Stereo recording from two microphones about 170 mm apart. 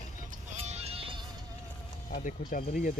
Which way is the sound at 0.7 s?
35° right (ahead or behind).